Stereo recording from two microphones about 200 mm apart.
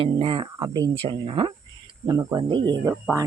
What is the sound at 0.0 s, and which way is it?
Speech, 25° right (ahead or behind).